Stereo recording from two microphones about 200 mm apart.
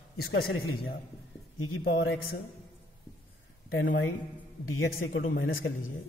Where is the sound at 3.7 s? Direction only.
70° left (ahead or behind).